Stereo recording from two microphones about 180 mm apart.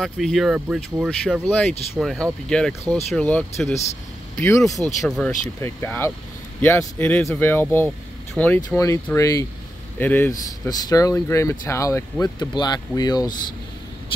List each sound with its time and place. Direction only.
0.0 s speech: centre (ahead or behind); by 4.7 s 15° left (ahead or behind)
5.0 s speech: centre (ahead or behind)
5.6 s speech: 15° left (ahead or behind)